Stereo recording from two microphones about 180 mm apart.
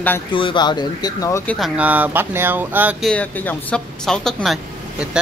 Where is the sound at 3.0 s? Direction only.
5° left (ahead or behind).